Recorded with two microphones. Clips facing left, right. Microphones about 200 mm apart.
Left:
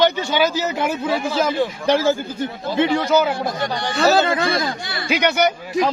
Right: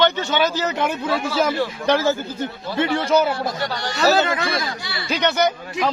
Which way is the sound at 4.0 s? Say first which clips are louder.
Left 2 dB; 30° left (ahead or behind).